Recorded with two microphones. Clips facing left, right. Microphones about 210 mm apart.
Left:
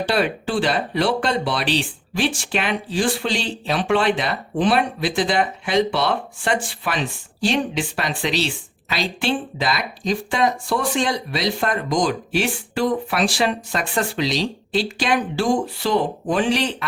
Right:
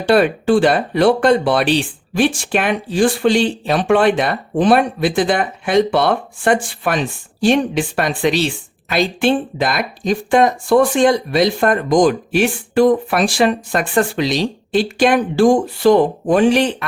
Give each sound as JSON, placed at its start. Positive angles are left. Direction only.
{"t": 0.1, "sound": "speech", "side_deg": -55}